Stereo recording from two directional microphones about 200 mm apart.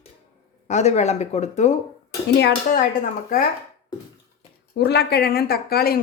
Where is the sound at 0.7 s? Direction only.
35° left (ahead or behind).